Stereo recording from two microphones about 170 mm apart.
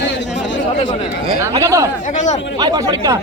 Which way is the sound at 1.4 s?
15° right (ahead or behind).